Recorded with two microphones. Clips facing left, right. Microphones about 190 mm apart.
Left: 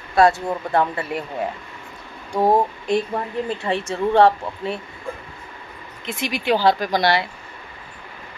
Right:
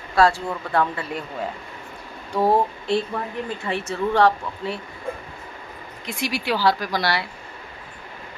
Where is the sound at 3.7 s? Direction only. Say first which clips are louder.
Left 2 dB; 30° left (ahead or behind).